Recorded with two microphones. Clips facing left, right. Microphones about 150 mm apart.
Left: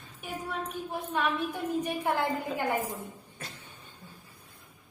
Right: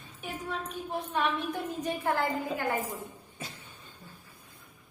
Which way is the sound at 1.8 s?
15° left (ahead or behind).